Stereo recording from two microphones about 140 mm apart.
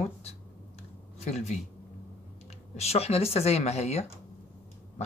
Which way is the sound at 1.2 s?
50° left (ahead or behind).